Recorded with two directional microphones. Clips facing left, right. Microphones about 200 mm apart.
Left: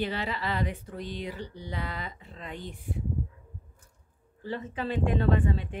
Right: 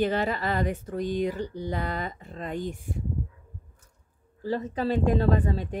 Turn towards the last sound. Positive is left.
turn(degrees=-40)  # may be behind; listen again after turning